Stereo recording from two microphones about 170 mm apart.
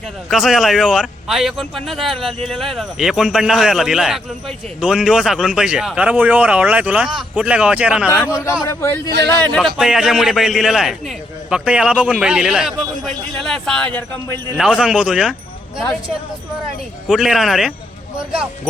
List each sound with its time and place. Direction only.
0.3 s speech: centre (ahead or behind)
8.0 s a man's voice: 10° left (ahead or behind)
9.6 s speech: centre (ahead or behind)
14.6 s speech: 5° right (ahead or behind)
17.1 s speech: centre (ahead or behind)